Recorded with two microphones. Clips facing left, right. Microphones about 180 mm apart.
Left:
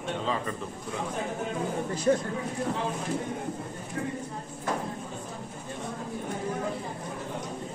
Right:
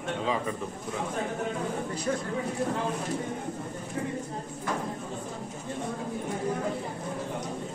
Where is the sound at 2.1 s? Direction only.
35° left (ahead or behind).